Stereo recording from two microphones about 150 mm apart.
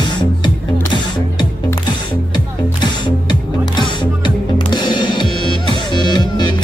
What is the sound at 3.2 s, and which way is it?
Music, 30° left (ahead or behind).